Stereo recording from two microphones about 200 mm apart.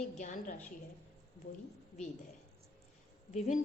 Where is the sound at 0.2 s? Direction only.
35° left (ahead or behind).